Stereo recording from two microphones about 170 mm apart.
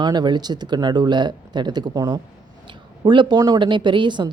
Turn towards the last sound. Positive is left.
turn(degrees=-25)  # may be behind; listen again after turning